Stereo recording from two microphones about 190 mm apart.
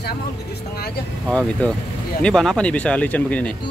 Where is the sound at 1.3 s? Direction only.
5° left (ahead or behind).